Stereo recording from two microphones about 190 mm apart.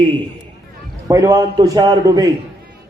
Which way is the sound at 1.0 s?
15° right (ahead or behind).